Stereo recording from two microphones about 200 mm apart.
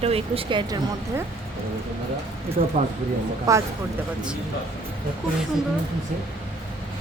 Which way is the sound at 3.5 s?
15° right (ahead or behind).